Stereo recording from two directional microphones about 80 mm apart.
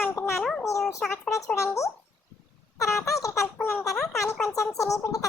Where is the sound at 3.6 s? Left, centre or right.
Left.